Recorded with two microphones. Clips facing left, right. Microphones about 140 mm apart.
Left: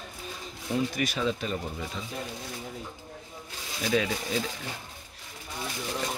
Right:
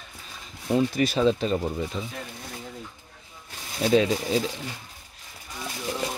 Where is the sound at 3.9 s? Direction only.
25° right (ahead or behind).